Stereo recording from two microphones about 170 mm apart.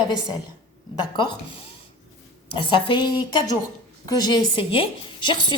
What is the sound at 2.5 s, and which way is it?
Speech, 30° left (ahead or behind).